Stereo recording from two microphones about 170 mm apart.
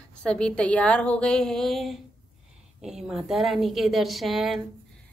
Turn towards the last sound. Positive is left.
turn(degrees=0)  # may be behind; listen again after turning